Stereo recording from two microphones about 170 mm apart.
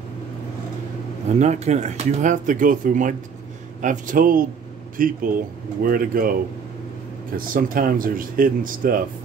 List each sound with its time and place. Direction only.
1.4 s speech: 40° right (ahead or behind); by 6.3 s 55° right (ahead or behind)
7.3 s speech: 55° right (ahead or behind)